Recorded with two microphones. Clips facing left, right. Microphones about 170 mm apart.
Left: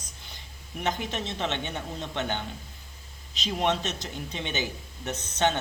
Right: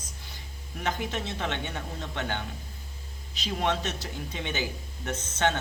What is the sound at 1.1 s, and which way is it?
A woman's voice, 20° left (ahead or behind).